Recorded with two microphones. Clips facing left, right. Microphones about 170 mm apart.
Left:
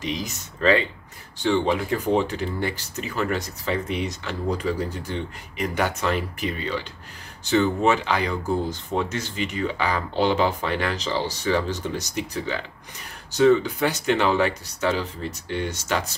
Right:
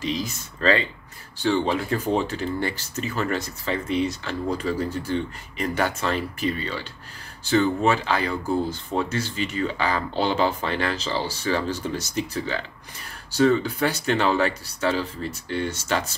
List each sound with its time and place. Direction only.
0.0 s speech: 15° left (ahead or behind)